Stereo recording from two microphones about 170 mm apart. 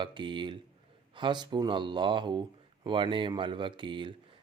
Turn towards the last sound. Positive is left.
turn(degrees=-30)  # may be behind; listen again after turning